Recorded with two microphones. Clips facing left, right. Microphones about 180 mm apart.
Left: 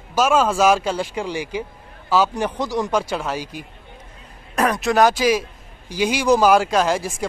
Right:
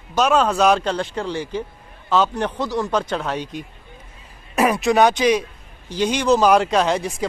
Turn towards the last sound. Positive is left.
turn(degrees=0)  # may be behind; listen again after turning